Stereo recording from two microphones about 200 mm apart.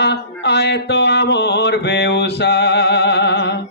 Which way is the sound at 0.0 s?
60° left (ahead or behind).